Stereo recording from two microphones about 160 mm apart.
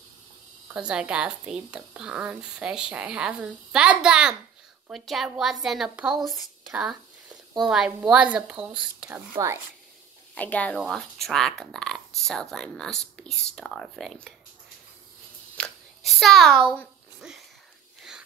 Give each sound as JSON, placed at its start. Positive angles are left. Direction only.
{"t": 0.7, "sound": "a woman's voice", "side_deg": -5}
{"t": 9.3, "sound": "speech", "side_deg": -20}
{"t": 10.3, "sound": "speech", "side_deg": 10}
{"t": 15.5, "sound": "a sound", "side_deg": 5}